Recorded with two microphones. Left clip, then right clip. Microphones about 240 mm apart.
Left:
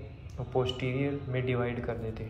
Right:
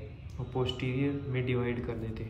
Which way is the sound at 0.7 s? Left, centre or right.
Centre.